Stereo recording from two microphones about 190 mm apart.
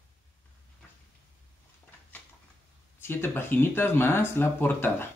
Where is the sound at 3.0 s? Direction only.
10° left (ahead or behind).